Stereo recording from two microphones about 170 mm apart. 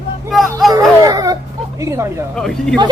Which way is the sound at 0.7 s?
20° right (ahead or behind).